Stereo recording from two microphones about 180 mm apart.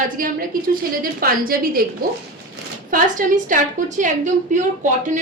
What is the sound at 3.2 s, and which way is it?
Speech, 50° right (ahead or behind).